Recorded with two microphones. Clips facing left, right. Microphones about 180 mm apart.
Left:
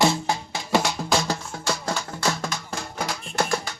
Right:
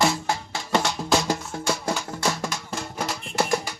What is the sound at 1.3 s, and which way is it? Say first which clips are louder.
Music: right 2 dB; 15° right (ahead or behind).